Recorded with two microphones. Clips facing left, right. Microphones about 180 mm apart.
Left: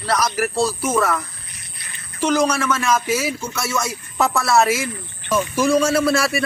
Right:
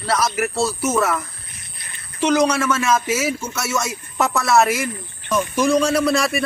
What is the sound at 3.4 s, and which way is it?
Speech, 5° right (ahead or behind).